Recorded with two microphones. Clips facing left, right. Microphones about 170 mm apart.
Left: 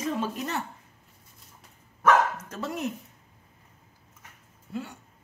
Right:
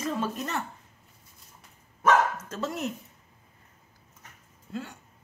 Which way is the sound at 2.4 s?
15° left (ahead or behind).